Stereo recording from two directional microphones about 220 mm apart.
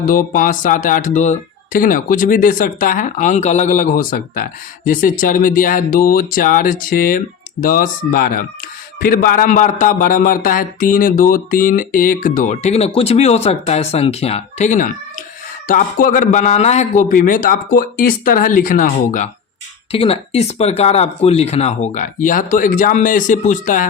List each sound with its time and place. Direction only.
0.1 s a man's voice: 40° left (ahead or behind)